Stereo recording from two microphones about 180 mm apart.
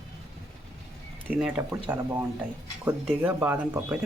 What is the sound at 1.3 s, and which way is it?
Speech, 5° right (ahead or behind).